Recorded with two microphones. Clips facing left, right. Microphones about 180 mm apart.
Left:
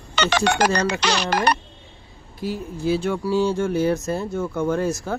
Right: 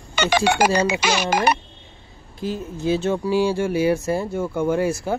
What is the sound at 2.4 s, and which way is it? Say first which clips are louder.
Speech: right 1 dB; 20° right (ahead or behind).